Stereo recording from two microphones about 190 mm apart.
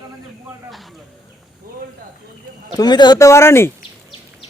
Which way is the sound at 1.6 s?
50° right (ahead or behind).